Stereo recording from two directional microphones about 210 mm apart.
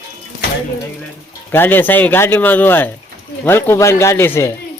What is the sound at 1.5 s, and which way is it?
Speech, 10° left (ahead or behind).